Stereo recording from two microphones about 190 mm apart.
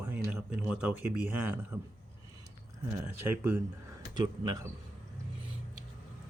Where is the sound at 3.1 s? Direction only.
10° right (ahead or behind).